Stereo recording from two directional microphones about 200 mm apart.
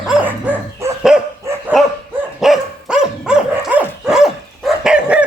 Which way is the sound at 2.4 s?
Centre (ahead or behind).